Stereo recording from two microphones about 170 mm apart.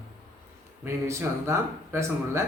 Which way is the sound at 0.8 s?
15° right (ahead or behind).